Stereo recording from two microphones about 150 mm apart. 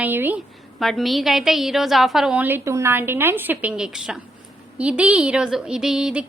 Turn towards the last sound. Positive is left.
turn(degrees=-5)  # may be behind; listen again after turning